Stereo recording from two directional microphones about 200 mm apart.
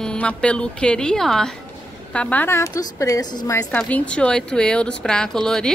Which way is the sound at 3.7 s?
5° left (ahead or behind).